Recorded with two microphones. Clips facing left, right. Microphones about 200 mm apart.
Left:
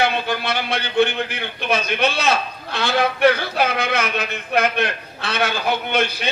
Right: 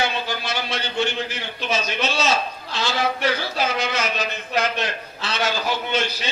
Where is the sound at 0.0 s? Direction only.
60° left (ahead or behind).